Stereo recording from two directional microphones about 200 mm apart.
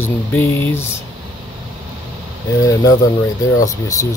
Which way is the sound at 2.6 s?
15° left (ahead or behind).